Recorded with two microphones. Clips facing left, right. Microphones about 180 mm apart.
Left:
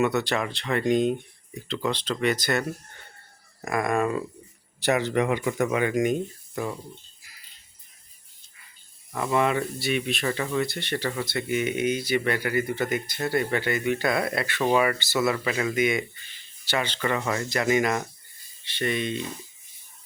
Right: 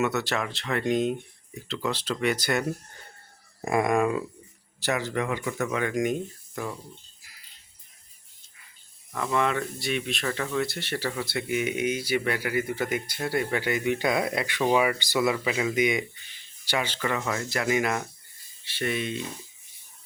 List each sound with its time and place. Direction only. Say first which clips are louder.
0.0 s speech: left 3 dB; centre (ahead or behind)
3.6 s speech: right 2 dB; 25° right (ahead or behind)
4.8 s speech: left 5 dB; 20° left (ahead or behind)
9.1 s speech: left 2 dB; 10° left (ahead or behind)